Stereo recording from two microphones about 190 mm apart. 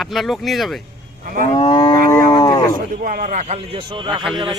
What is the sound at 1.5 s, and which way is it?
Livestock, 25° left (ahead or behind).